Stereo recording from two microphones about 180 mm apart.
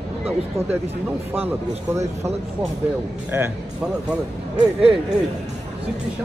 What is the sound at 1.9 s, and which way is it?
Speech, 15° right (ahead or behind).